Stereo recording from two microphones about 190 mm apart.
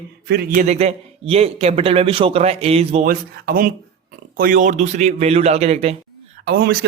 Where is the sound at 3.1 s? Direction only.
50° right (ahead or behind); by 6.0 s 35° right (ahead or behind).